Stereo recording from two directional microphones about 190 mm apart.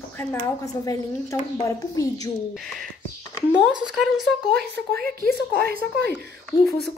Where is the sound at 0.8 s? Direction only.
15° left (ahead or behind).